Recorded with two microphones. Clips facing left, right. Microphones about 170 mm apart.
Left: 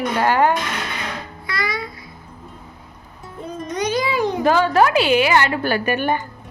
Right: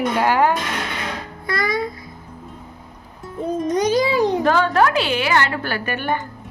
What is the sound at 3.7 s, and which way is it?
Music, 40° right (ahead or behind).